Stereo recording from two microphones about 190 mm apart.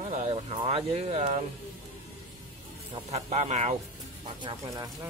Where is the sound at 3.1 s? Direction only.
35° right (ahead or behind).